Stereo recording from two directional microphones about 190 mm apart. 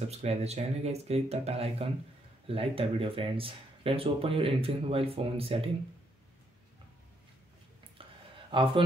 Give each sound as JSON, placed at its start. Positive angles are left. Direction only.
{"t": 0.1, "sound": "speech", "side_deg": -35}
{"t": 8.0, "sound": "a sound", "side_deg": -30}
{"t": 8.5, "sound": "a man's voice", "side_deg": -25}